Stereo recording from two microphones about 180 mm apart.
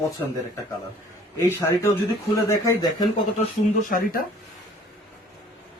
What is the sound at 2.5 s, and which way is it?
Speech, 20° left (ahead or behind).